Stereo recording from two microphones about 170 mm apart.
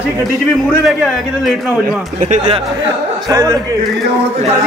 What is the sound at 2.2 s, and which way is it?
Speech, 45° right (ahead or behind).